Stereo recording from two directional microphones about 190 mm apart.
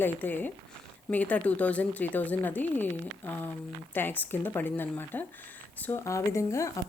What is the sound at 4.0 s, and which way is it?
A woman's voice, 10° left (ahead or behind).